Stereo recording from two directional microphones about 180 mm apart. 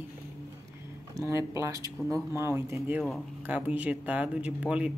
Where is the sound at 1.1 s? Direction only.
15° right (ahead or behind).